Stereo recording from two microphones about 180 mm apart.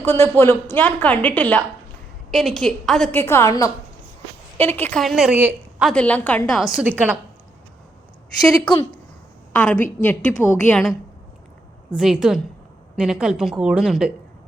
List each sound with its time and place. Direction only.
0.0 s a woman's voice: 15° left (ahead or behind); by 5.9 s 10° right (ahead or behind)
5.9 s a woman's voice: 5° left (ahead or behind); by 7.2 s 10° right (ahead or behind)
8.4 s speech: 25° left (ahead or behind)
9.5 s a woman's voice: 10° left (ahead or behind)